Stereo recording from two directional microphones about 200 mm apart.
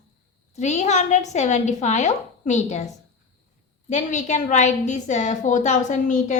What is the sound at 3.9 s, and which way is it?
A woman's voice, 35° left (ahead or behind).